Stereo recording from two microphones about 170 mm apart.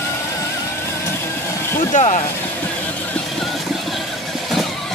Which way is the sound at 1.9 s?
45° left (ahead or behind).